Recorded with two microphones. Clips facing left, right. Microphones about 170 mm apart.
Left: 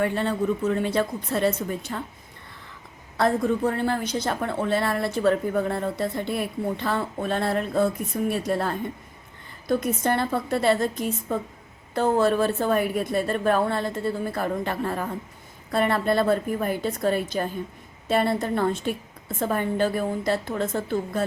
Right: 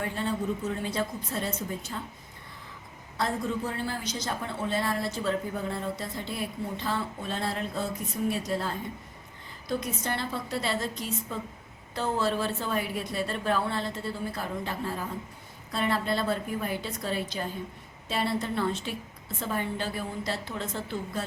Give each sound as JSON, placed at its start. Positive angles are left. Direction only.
{"t": 0.0, "sound": "a woman's voice", "side_deg": 65}
{"t": 3.2, "sound": "a woman's voice", "side_deg": 60}